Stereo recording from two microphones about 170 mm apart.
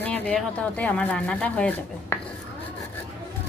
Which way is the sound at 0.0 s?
10° left (ahead or behind).